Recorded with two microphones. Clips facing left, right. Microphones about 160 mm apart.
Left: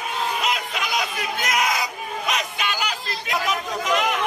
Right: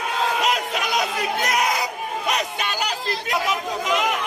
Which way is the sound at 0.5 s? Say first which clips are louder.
Right 3 dB; 35° right (ahead or behind).